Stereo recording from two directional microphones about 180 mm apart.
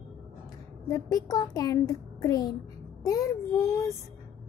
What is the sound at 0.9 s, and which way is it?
A woman's voice, 20° left (ahead or behind).